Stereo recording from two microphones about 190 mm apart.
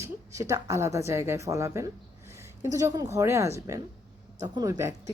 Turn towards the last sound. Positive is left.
turn(degrees=-15)  # may be behind; listen again after turning